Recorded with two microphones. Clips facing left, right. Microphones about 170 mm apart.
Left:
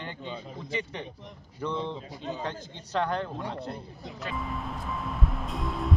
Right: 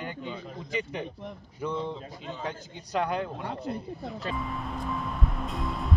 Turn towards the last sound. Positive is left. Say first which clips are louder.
# even
turn(degrees=0)  # may be behind; listen again after turning